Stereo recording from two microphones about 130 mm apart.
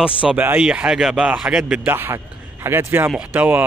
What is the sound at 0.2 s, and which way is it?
Speech, 10° right (ahead or behind).